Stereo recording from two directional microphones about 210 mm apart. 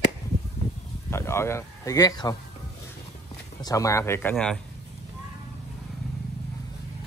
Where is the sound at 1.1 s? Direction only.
10° left (ahead or behind).